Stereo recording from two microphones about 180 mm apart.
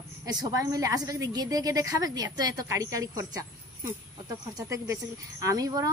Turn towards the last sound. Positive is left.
turn(degrees=-20)  # may be behind; listen again after turning